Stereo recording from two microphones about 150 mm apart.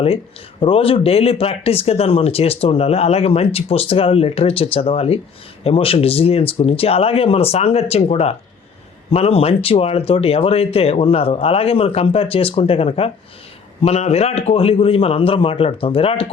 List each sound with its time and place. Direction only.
0.6 s speech: 40° left (ahead or behind)